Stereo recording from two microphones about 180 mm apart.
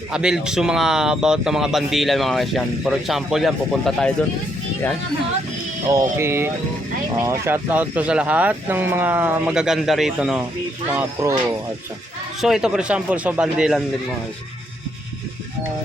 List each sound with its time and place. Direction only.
0.1 s speech: 5° right (ahead or behind)
5.9 s speech: 15° right (ahead or behind)
10.9 s speech: 15° right (ahead or behind)
12.4 s speech: centre (ahead or behind)